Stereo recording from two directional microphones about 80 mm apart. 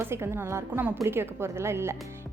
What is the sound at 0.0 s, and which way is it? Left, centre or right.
A woman's voice, right.